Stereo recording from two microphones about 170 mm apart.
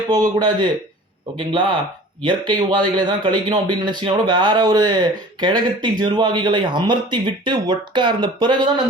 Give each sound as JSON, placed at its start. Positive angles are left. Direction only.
{"t": 0.1, "sound": "speech", "side_deg": -25}